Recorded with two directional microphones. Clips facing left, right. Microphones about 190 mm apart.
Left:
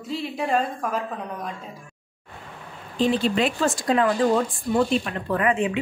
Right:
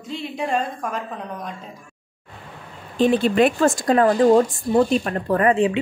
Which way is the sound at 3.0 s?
50° right (ahead or behind).